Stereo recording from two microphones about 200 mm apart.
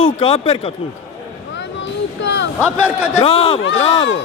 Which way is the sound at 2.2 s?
65° left (ahead or behind).